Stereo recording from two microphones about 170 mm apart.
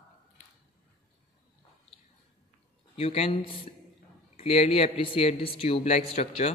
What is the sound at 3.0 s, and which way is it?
Speech, 35° left (ahead or behind).